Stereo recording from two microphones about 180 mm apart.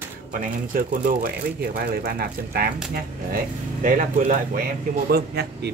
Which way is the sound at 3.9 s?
50° right (ahead or behind).